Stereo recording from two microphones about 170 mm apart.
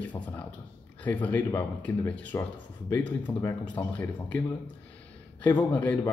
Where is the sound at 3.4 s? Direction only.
10° left (ahead or behind).